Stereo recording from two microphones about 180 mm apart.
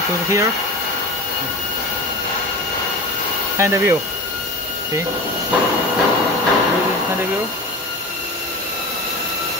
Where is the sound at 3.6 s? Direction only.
15° right (ahead or behind).